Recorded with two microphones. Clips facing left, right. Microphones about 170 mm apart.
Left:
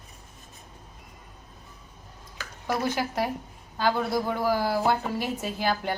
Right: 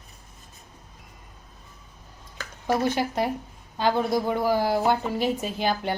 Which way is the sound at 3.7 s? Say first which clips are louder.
Right 2 dB; 20° right (ahead or behind).